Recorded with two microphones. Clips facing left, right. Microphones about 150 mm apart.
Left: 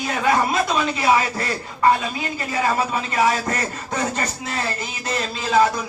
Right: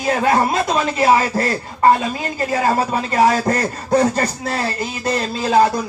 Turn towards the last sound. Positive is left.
turn(degrees=-40)  # may be behind; listen again after turning